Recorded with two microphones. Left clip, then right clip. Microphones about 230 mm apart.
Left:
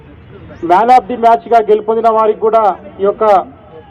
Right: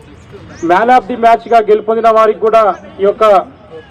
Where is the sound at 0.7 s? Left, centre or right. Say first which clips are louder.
Left 1 dB; right.